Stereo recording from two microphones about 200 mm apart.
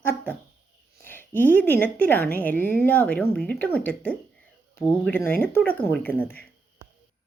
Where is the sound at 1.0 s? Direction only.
10° left (ahead or behind).